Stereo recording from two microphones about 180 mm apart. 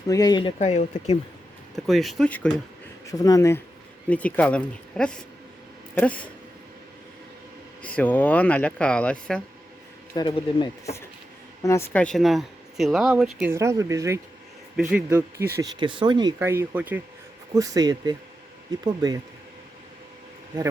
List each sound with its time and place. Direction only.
0.1 s speech: 20° left (ahead or behind)
0.6 s speech: 40° left (ahead or behind)
1.7 s speech: centre (ahead or behind)
3.1 s speech: 20° left (ahead or behind)
4.1 s speech: 10° left (ahead or behind)
7.8 s speech: 5° left (ahead or behind)
10.2 s speech: 25° left (ahead or behind)
11.6 s speech: 15° left (ahead or behind); by 13.5 s 5° right (ahead or behind)
13.5 s speech: 15° right (ahead or behind)
15.5 s speech: 25° right (ahead or behind)
16.4 s speech: 15° right (ahead or behind)